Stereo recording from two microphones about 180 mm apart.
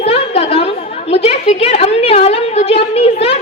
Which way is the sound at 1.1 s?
35° left (ahead or behind).